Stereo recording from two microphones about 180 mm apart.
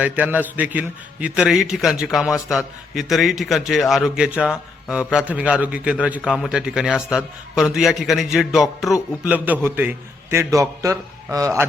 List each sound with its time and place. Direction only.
0.0 s a man's voice: 10° right (ahead or behind)